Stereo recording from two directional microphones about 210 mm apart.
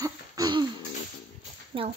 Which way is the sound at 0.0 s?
20° right (ahead or behind).